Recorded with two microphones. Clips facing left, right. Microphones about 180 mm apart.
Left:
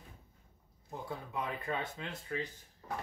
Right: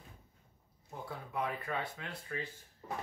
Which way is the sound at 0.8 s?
20° left (ahead or behind).